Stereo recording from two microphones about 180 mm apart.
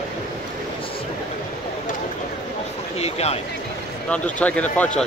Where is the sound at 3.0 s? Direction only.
35° left (ahead or behind).